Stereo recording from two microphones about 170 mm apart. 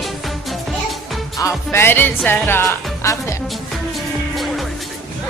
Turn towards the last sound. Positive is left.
turn(degrees=0)  # may be behind; listen again after turning